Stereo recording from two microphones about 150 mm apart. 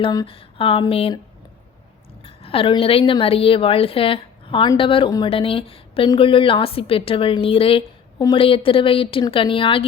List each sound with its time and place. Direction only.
0.0 s speech: 25° left (ahead or behind)
0.3 s a woman's voice: 40° left (ahead or behind)
2.2 s a sound: 40° left (ahead or behind)
3.1 s a woman's voice: 40° left (ahead or behind)